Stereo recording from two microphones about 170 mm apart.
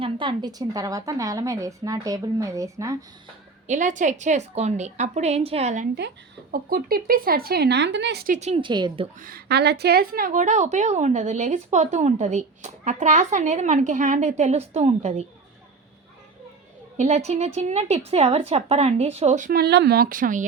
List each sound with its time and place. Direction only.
0.0 s a woman's voice: 30° right (ahead or behind)
3.7 s a woman's voice: 45° right (ahead or behind)
6.5 s a woman's voice: 60° right (ahead or behind); by 8.2 s 90° right
8.3 s a woman's voice: 40° right (ahead or behind)
9.2 s a woman's voice: 65° right (ahead or behind); by 15.3 s 40° right (ahead or behind)
17.0 s a woman's voice: 40° right (ahead or behind)
19.5 s a woman's voice: 70° right (ahead or behind); by 20.4 s 55° right (ahead or behind)